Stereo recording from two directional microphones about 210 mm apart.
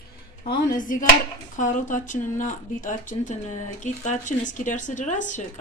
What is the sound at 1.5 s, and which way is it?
Speech, 35° left (ahead or behind).